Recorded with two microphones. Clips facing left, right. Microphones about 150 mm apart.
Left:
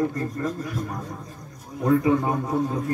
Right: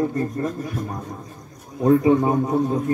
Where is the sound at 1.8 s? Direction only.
20° right (ahead or behind).